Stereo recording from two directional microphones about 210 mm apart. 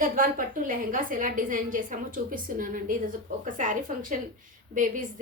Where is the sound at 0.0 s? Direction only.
40° right (ahead or behind).